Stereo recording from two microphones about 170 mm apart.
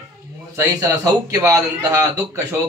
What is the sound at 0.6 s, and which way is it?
A man's voice, 20° right (ahead or behind).